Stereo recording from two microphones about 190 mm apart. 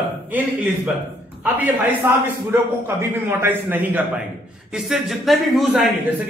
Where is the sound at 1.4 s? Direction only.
10° right (ahead or behind).